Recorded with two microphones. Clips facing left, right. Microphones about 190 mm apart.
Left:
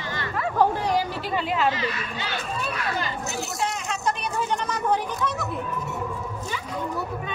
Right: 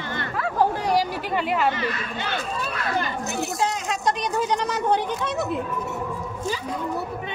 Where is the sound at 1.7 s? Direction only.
55° right (ahead or behind).